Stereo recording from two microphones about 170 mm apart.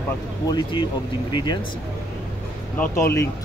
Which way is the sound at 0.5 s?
25° left (ahead or behind).